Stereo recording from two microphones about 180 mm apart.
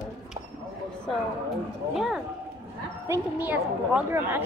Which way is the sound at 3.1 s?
15° right (ahead or behind).